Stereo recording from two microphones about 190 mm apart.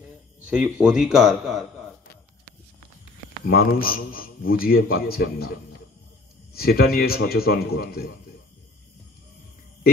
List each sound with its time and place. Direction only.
0.5 s a man's voice: 5° right (ahead or behind)
3.4 s a man's voice: 50° left (ahead or behind)
6.5 s a man's voice: 55° left (ahead or behind)